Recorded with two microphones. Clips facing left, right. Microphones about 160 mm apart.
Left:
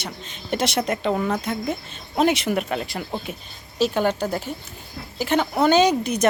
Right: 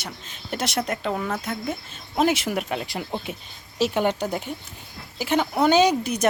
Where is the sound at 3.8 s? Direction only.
20° right (ahead or behind).